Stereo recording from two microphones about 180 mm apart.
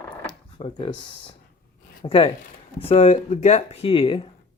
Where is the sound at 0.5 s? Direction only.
30° left (ahead or behind).